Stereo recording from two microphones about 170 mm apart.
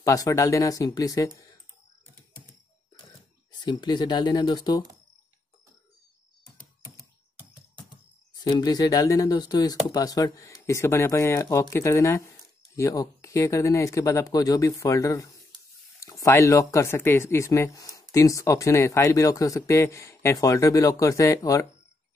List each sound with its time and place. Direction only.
0.0 s speech: 20° left (ahead or behind)
3.5 s speech: 25° left (ahead or behind)
8.5 s speech: 20° left (ahead or behind)